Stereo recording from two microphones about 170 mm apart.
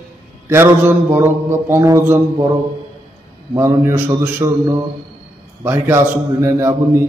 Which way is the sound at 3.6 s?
15° right (ahead or behind).